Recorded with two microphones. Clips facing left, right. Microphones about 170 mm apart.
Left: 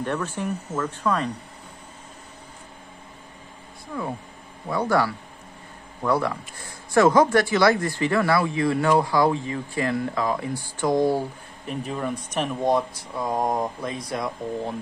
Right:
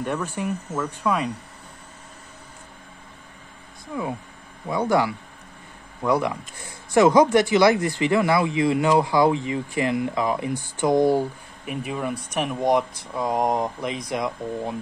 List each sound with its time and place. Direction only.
0.0 s speech: 10° right (ahead or behind)
4.6 s speech: 20° right (ahead or behind)